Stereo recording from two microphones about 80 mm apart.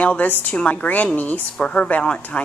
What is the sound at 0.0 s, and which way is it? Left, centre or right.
A woman's voice, centre.